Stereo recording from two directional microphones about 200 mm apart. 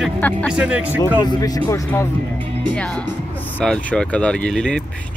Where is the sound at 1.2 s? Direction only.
20° left (ahead or behind).